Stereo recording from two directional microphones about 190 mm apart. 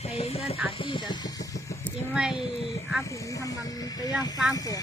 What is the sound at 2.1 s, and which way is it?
Speech, 5° right (ahead or behind).